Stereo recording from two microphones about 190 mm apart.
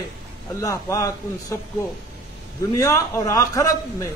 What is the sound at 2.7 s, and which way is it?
A man's voice, 15° left (ahead or behind).